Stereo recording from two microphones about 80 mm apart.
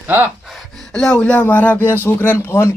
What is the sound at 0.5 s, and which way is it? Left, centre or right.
Speech, centre.